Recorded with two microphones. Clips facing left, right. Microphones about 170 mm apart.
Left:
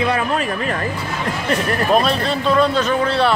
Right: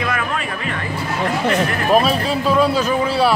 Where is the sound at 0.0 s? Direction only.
35° left (ahead or behind).